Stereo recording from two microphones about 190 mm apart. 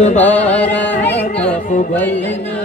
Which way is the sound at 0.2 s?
10° left (ahead or behind).